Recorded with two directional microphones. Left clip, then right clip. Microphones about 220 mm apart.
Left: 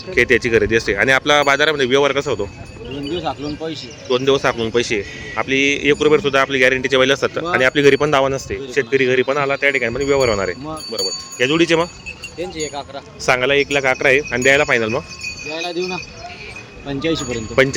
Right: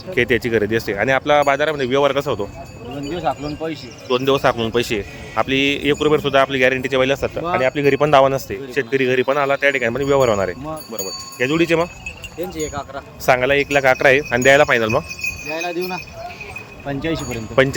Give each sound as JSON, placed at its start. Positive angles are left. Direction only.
{"t": 0.1, "sound": "a man's voice", "side_deg": -10}
{"t": 7.9, "sound": "a man's voice", "side_deg": -15}
{"t": 12.4, "sound": "speech", "side_deg": -50}
{"t": 13.2, "sound": "speech", "side_deg": -10}
{"t": 15.4, "sound": "a man's voice", "side_deg": 0}